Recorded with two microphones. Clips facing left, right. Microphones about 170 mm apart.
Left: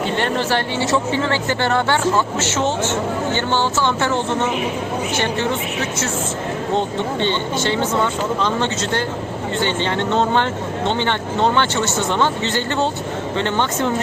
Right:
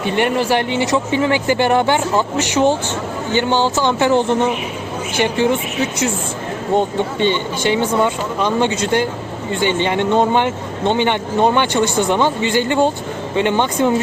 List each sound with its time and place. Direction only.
0.0 s speech: 15° right (ahead or behind)
6.7 s speech: 15° right (ahead or behind)